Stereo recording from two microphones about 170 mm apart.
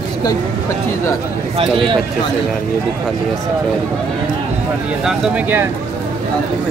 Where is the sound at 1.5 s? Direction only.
30° right (ahead or behind).